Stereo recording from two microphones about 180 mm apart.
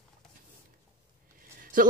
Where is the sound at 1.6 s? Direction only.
50° right (ahead or behind).